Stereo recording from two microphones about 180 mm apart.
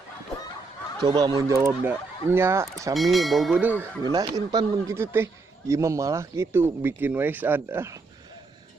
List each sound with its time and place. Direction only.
1.0 s a man's voice: 25° right (ahead or behind)
2.9 s speech: centre (ahead or behind)
4.0 s a man's voice: 20° right (ahead or behind)